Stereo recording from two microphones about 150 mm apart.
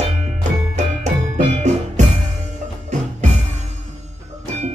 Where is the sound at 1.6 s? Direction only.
50° right (ahead or behind).